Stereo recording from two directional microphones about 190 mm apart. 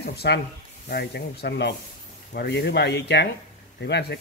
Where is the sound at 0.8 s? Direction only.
60° left (ahead or behind).